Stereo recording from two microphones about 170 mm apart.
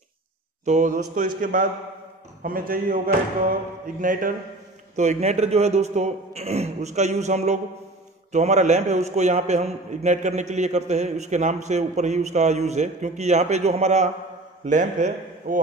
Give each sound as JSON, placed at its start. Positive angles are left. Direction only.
{"t": 0.7, "sound": "a man's voice", "side_deg": -50}
{"t": 4.9, "sound": "a man's voice", "side_deg": -40}